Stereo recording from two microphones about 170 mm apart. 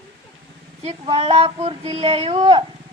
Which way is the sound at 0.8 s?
35° right (ahead or behind).